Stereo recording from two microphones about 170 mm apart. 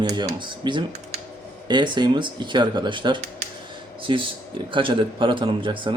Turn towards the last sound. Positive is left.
turn(degrees=-30)  # may be behind; listen again after turning